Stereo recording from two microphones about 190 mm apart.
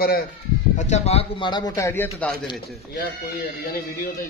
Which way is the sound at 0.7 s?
35° left (ahead or behind).